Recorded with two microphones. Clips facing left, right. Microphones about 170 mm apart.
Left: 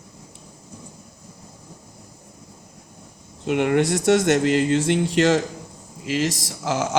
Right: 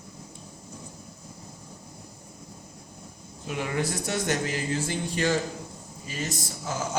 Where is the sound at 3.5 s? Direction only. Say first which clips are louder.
Left 10 dB; 70° left (ahead or behind); by 7.0 s 90° left.